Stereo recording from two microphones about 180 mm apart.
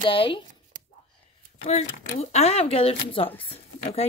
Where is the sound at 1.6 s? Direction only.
40° left (ahead or behind).